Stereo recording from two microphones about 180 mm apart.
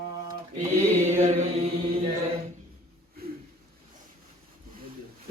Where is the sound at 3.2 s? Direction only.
60° right (ahead or behind).